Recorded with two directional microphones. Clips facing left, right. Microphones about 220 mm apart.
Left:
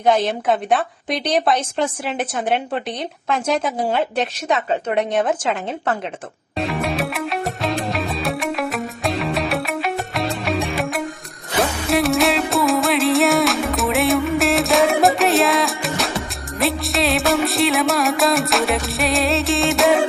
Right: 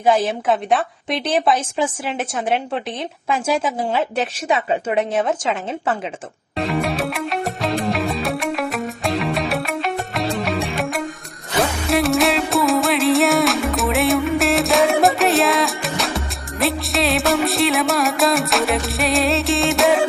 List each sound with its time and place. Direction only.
0.3 s a woman's voice: centre (ahead or behind)
6.8 s music: centre (ahead or behind)